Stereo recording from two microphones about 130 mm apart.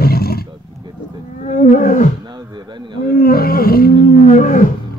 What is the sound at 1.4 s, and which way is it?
Wild animals, 65° left (ahead or behind).